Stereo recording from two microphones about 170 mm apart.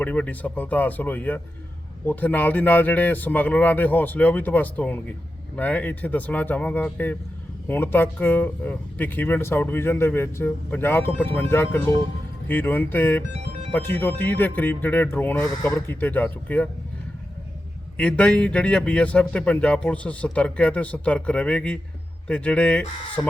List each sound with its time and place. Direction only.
0.0 s speech: 10° left (ahead or behind)
17.9 s speech: 5° left (ahead or behind)